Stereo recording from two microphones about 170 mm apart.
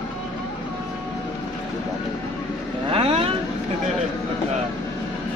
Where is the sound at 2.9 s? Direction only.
35° right (ahead or behind).